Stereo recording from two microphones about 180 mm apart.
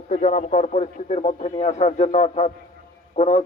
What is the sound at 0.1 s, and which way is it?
Speech, 45° left (ahead or behind).